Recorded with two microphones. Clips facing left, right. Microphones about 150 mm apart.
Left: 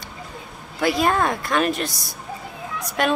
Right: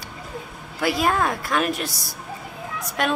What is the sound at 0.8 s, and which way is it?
A woman's voice, 5° right (ahead or behind).